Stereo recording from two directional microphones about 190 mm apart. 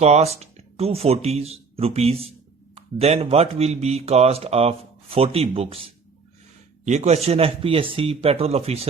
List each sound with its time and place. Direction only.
0.0 s speech: 35° right (ahead or behind)